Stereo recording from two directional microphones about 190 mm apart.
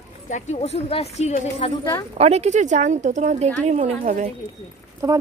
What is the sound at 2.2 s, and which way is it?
Speech, 35° right (ahead or behind).